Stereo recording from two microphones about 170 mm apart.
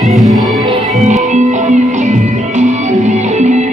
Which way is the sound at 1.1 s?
45° right (ahead or behind).